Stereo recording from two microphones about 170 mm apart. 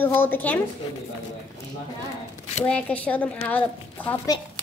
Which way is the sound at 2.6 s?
5° left (ahead or behind).